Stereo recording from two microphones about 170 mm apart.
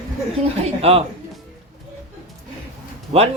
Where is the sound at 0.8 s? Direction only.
35° right (ahead or behind).